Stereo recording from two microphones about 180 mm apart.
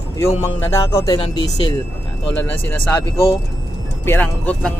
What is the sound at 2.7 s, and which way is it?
Speech, 15° left (ahead or behind).